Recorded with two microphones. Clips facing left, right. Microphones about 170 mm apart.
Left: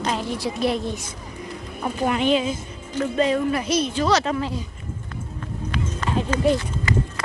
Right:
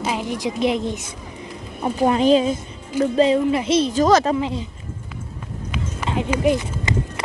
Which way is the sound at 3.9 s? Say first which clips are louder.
Right 6 dB; 45° right (ahead or behind).